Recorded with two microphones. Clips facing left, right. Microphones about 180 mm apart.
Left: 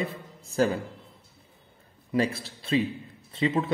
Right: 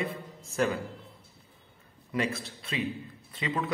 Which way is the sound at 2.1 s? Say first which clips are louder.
Left 5 dB; 30° left (ahead or behind).